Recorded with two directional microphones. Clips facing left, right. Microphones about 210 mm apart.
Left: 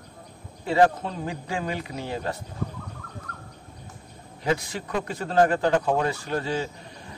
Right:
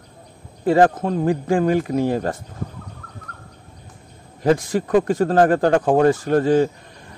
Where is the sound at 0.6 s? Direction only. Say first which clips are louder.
Right 5 dB; 50° right (ahead or behind).